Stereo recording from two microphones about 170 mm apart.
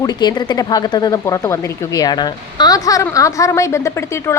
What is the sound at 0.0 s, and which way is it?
A woman's voice, 25° left (ahead or behind).